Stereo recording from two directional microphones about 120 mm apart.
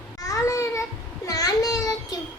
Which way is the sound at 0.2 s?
30° left (ahead or behind).